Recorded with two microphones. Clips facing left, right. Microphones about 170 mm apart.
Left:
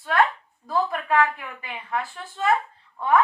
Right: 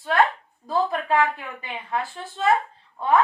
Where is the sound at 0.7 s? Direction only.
30° right (ahead or behind).